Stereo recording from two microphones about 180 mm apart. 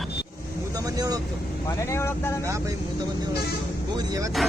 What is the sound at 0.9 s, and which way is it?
Speech, 20° right (ahead or behind).